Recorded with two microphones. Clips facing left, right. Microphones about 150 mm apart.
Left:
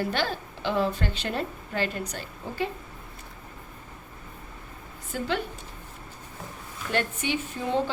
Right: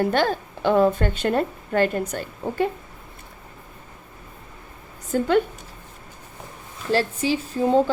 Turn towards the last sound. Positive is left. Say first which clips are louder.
# right 8 dB
turn(degrees=-45)  # may be behind; listen again after turning